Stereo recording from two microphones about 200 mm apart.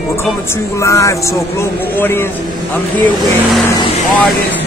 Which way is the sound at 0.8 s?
15° left (ahead or behind).